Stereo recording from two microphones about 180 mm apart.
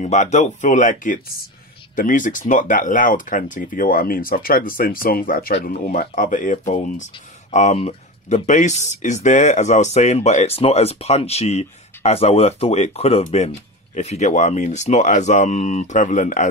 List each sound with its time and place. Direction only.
0.0 s speech: 40° left (ahead or behind)